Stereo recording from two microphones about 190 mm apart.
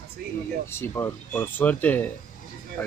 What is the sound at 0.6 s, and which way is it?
Speech, 15° left (ahead or behind).